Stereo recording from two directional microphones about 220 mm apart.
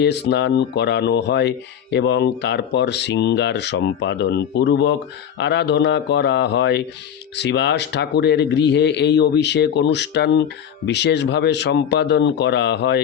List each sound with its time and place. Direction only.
0.0 s speech: 50° left (ahead or behind)